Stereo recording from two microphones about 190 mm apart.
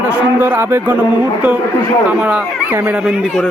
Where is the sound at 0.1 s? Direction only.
10° right (ahead or behind).